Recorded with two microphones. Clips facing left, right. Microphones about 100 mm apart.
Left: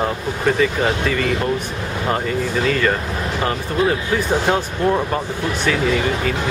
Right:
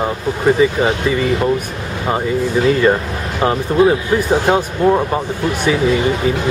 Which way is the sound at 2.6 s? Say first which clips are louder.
Right 7 dB; 20° right (ahead or behind).